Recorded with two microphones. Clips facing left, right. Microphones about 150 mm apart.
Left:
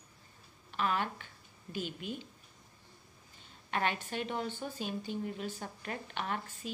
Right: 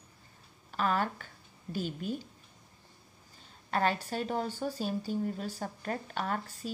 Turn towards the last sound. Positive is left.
turn(degrees=-40)  # may be behind; listen again after turning